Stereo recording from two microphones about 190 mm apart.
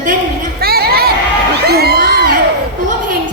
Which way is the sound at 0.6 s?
55° right (ahead or behind).